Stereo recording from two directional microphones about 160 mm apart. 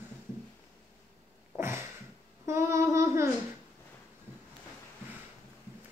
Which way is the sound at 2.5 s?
20° right (ahead or behind).